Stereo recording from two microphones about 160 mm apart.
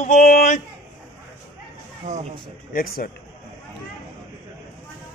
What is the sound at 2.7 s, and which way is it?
Speech, 70° left (ahead or behind).